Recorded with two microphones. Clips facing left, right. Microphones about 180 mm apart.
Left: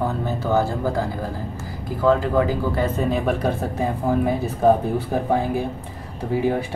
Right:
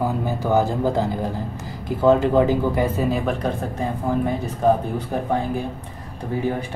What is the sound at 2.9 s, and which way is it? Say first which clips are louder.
Speech: even; 5° right (ahead or behind).